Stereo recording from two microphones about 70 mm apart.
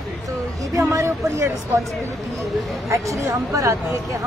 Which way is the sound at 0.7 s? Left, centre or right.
Right.